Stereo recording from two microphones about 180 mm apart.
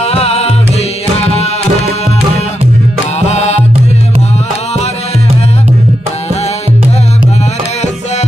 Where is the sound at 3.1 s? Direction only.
35° left (ahead or behind).